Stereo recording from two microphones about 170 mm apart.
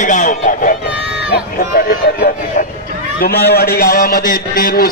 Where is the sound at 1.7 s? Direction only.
55° left (ahead or behind).